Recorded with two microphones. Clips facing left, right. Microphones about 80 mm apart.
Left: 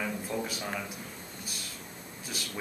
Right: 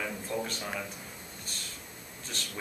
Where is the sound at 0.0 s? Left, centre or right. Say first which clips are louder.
Left 1 dB; centre.